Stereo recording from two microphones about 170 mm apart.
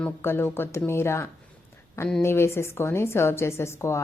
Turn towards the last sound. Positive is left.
turn(degrees=15)  # may be behind; listen again after turning